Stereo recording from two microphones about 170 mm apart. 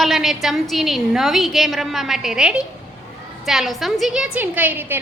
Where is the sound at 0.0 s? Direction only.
Centre (ahead or behind).